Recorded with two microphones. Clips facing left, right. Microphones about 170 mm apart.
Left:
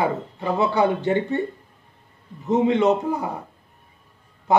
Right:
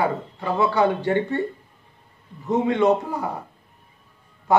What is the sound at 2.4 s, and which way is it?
Speech, 20° left (ahead or behind).